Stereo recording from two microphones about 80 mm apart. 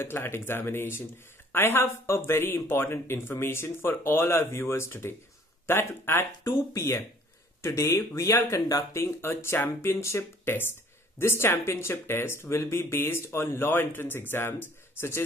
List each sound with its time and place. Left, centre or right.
0.0 s speech: left